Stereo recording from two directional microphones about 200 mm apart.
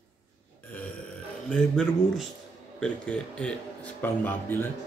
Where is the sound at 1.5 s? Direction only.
5° left (ahead or behind).